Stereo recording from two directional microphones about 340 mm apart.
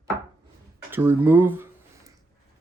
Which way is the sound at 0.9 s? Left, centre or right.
Centre.